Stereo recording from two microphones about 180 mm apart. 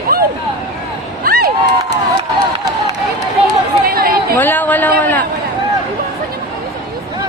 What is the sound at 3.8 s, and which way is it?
Chatter, 55° right (ahead or behind).